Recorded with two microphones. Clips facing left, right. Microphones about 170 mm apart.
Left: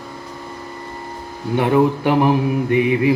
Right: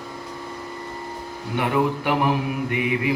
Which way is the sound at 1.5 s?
30° left (ahead or behind).